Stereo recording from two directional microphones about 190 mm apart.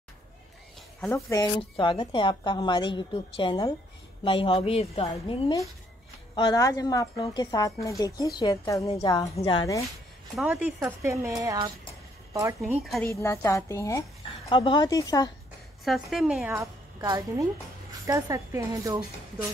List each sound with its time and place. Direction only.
1.1 s a woman's voice: 15° left (ahead or behind)
1.6 s a woman's voice: 25° left (ahead or behind)
10.3 s speech: 5° right (ahead or behind); by 11.7 s 25° right (ahead or behind)
12.6 s a woman's voice: centre (ahead or behind)
13.0 s a woman's voice: 15° left (ahead or behind)
15.8 s a woman's voice: centre (ahead or behind)
16.5 s a woman's voice: 15° right (ahead or behind)